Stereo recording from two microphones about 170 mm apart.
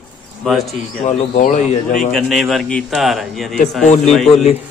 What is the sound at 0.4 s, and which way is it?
Speech, centre (ahead or behind).